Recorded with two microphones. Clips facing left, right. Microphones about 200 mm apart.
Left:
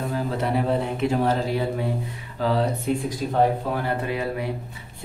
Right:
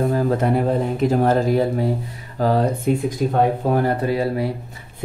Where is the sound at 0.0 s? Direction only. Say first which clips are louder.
Right 7 dB; 45° right (ahead or behind).